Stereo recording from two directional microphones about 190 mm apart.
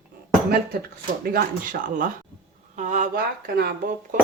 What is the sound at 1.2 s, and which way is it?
Speech, 45° right (ahead or behind).